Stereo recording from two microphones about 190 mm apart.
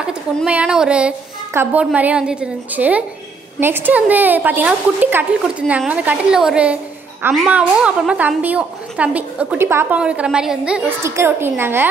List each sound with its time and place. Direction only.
0.0 s a woman's voice: 5° right (ahead or behind)